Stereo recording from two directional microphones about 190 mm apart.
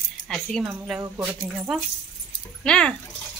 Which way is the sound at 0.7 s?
10° right (ahead or behind).